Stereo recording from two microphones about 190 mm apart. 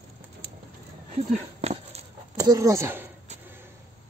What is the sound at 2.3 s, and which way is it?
Speech, 20° right (ahead or behind).